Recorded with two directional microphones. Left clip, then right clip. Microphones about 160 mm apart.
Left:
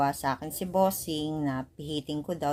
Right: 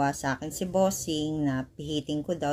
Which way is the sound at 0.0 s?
5° left (ahead or behind).